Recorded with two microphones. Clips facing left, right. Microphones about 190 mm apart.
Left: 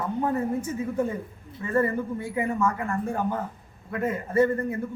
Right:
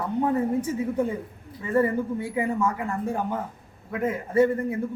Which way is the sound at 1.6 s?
15° right (ahead or behind).